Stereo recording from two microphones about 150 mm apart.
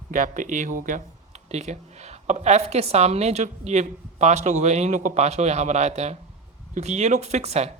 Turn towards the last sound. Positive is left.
turn(degrees=-45)  # may be behind; listen again after turning